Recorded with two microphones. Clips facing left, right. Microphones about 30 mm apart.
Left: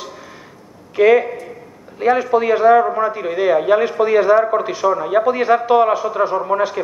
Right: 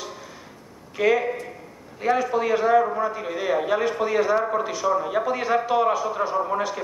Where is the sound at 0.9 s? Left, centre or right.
Left.